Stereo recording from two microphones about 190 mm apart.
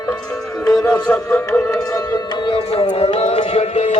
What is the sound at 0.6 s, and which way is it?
Music, 5° left (ahead or behind).